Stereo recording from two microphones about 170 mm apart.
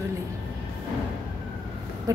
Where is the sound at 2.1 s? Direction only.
20° right (ahead or behind).